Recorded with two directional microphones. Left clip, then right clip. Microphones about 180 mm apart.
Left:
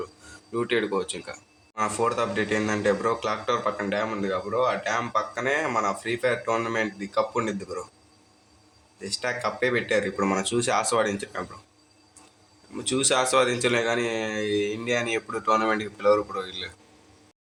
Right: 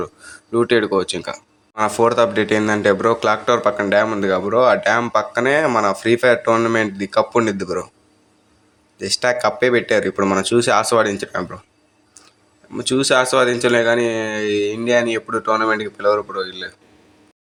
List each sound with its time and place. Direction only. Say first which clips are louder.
0.5 s speech: right 10 dB; 35° right (ahead or behind)
9.0 s speech: right 11 dB; 35° right (ahead or behind)
12.7 s speech: right 8 dB; 30° right (ahead or behind)